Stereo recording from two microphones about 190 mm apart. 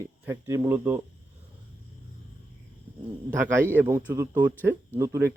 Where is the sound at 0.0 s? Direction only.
15° right (ahead or behind).